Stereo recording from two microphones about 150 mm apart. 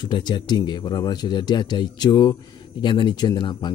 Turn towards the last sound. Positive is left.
turn(degrees=30)  # may be behind; listen again after turning